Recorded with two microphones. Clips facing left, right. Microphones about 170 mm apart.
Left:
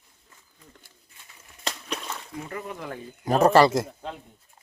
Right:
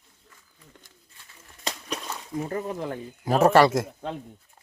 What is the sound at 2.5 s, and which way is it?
Speech, 35° right (ahead or behind).